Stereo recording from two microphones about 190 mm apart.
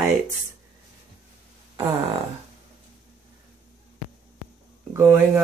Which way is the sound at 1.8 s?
30° right (ahead or behind).